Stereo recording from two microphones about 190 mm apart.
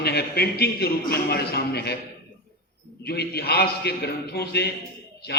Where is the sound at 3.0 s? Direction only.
55° left (ahead or behind).